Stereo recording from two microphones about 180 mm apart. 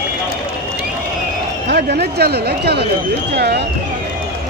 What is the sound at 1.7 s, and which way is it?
A man's voice, 65° right (ahead or behind).